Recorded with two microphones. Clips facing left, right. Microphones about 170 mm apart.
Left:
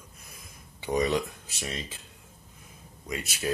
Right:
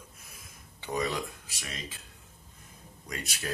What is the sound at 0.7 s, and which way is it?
Speech, 15° left (ahead or behind).